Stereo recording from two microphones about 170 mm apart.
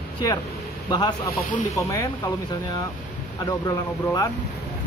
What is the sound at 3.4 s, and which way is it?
Speech, 20° left (ahead or behind).